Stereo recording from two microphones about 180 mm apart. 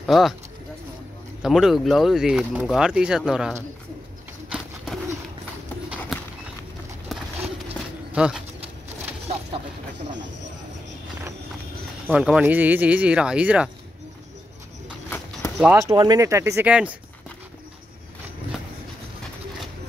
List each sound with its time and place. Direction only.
0.0 s speech: centre (ahead or behind)
1.4 s speech: centre (ahead or behind)
4.5 s bird: centre (ahead or behind)
7.1 s horse: centre (ahead or behind)
8.1 s speech: 5° right (ahead or behind)
8.8 s a sound: 35° right (ahead or behind)
12.1 s speech: 5° right (ahead or behind)
15.0 s clip-clop: 10° left (ahead or behind)
15.5 s speech: 10° right (ahead or behind)